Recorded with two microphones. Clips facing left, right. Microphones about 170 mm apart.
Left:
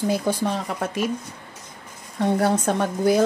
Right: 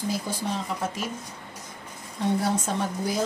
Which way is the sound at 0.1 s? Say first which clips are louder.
Left 7 dB; 65° left (ahead or behind).